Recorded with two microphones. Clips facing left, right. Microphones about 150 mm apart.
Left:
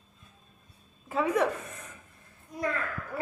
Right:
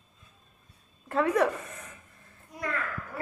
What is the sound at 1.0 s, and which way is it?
Speech, centre (ahead or behind).